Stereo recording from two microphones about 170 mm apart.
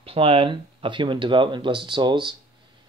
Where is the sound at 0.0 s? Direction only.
35° right (ahead or behind).